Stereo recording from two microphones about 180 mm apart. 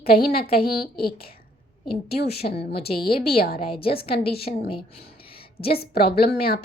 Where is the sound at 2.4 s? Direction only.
50° left (ahead or behind).